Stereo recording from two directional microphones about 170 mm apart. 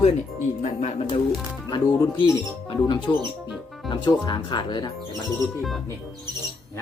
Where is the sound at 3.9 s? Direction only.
30° left (ahead or behind).